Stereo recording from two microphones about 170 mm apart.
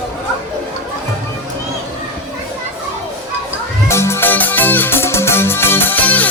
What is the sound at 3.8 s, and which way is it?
Music, 15° left (ahead or behind).